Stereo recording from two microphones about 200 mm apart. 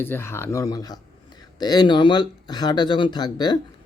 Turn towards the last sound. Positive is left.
turn(degrees=20)  # may be behind; listen again after turning